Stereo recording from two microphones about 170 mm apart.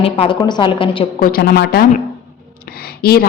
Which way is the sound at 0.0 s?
30° left (ahead or behind).